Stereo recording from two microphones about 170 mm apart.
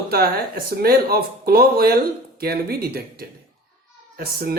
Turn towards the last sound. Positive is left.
turn(degrees=-65)  # may be behind; listen again after turning